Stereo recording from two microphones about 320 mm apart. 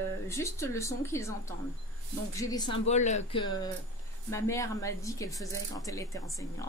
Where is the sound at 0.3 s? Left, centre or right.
Centre.